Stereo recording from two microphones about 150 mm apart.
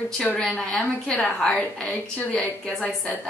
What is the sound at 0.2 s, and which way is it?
A woman's voice, 5° left (ahead or behind).